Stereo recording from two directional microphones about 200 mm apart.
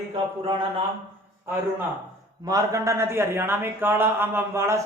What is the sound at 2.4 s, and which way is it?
A man's voice, 15° right (ahead or behind).